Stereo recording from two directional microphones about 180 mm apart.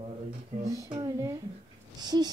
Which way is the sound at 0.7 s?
20° right (ahead or behind).